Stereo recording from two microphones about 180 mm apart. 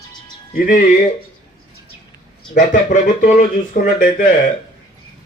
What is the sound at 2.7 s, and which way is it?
Speech, 45° left (ahead or behind).